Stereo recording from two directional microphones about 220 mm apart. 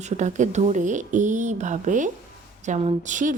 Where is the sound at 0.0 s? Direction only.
35° right (ahead or behind).